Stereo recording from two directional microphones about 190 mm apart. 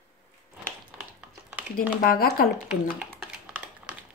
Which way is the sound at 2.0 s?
50° left (ahead or behind).